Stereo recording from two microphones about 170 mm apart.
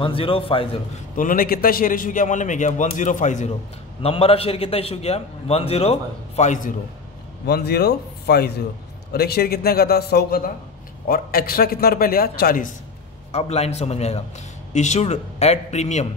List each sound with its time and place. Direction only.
0.0 s a man's voice: 30° left (ahead or behind)
1.1 s a man's voice: 55° left (ahead or behind)
4.0 s a man's voice: 35° left (ahead or behind)
7.4 s a man's voice: 70° left (ahead or behind)
13.3 s a man's voice: 35° left (ahead or behind)